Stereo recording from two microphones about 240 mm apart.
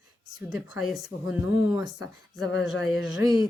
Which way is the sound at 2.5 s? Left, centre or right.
Left.